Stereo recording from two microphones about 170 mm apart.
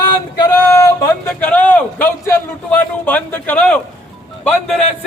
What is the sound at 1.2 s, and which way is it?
A man's voice, 10° left (ahead or behind).